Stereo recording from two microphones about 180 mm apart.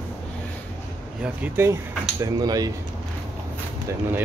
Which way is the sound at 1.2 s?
10° right (ahead or behind).